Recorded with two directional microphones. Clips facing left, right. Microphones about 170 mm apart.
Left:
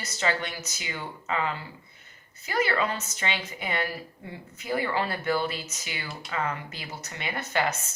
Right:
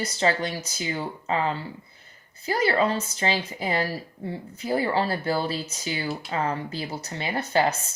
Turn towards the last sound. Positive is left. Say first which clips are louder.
# right 5 dB
turn(degrees=-35)  # may be behind; listen again after turning